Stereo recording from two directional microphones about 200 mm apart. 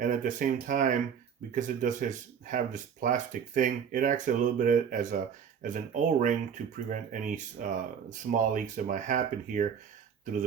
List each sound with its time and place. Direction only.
0.0 s speech: 40° right (ahead or behind)